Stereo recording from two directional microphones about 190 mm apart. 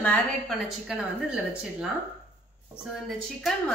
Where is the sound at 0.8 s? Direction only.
5° right (ahead or behind).